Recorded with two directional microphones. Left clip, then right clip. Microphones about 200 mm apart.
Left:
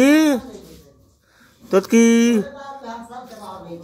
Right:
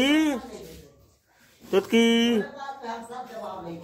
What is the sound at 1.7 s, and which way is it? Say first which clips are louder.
Speech: left 6 dB; 20° left (ahead or behind).